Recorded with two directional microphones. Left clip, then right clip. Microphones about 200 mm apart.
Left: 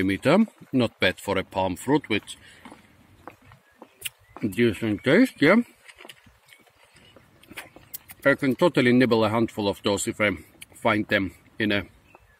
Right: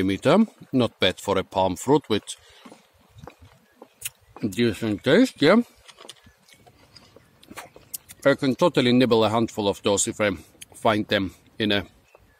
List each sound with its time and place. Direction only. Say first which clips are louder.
0.0 s speech: right 1 dB; 5° right (ahead or behind)
4.4 s speech: left 1 dB; 5° right (ahead or behind)
5.6 s keys jangling: right 1 dB; 15° right (ahead or behind)
7.4 s vehicle: even; 25° right (ahead or behind)
8.2 s speech: right 1 dB; 15° right (ahead or behind)